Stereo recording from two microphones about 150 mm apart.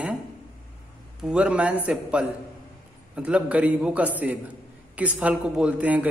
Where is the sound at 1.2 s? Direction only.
10° right (ahead or behind).